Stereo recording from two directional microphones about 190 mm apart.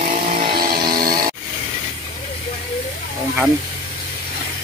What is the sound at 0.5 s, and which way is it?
Chainsaw, 50° right (ahead or behind).